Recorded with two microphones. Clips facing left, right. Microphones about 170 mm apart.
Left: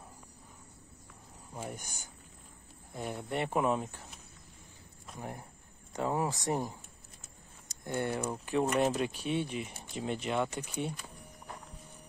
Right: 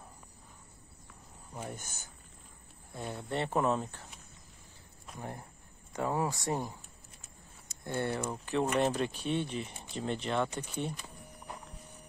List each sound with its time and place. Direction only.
1.5 s speech: 10° left (ahead or behind)
5.9 s speech: 20° left (ahead or behind)
7.8 s speech: 15° left (ahead or behind)